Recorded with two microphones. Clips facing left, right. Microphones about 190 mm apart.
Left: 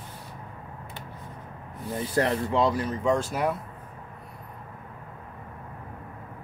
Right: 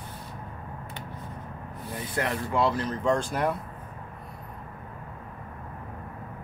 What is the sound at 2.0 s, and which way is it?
Speech, 30° left (ahead or behind).